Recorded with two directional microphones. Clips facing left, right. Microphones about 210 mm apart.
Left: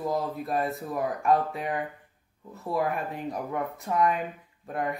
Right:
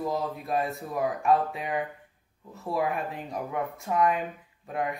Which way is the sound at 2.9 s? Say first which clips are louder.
Left 1 dB; centre (ahead or behind).